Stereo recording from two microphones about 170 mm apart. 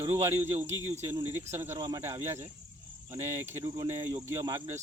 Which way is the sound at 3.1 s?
20° right (ahead or behind).